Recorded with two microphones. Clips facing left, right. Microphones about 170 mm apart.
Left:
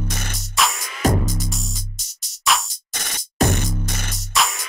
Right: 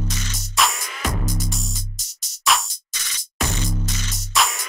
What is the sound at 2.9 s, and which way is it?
Static, 55° left (ahead or behind).